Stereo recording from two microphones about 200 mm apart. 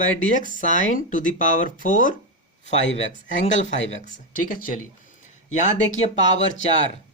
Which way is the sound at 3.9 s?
35° left (ahead or behind).